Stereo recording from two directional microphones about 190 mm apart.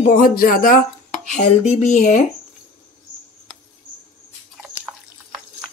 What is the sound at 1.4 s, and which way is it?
Speech, 35° left (ahead or behind).